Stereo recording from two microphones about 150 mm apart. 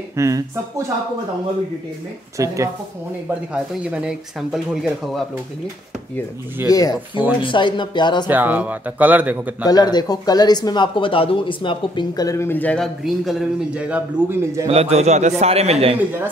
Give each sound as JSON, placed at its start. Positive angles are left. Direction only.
{"t": 0.1, "sound": "speech", "side_deg": -20}
{"t": 2.3, "sound": "speech", "side_deg": -20}
{"t": 3.8, "sound": "speech", "side_deg": -5}
{"t": 6.7, "sound": "speech", "side_deg": 25}
{"t": 8.3, "sound": "a man's voice", "side_deg": -10}
{"t": 9.7, "sound": "speech", "side_deg": 25}
{"t": 14.7, "sound": "a man's voice", "side_deg": -45}